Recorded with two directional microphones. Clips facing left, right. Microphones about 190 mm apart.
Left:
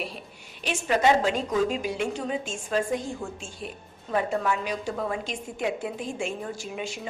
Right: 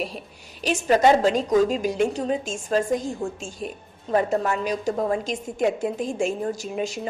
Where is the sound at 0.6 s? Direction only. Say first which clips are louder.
Right 5 dB; 40° right (ahead or behind).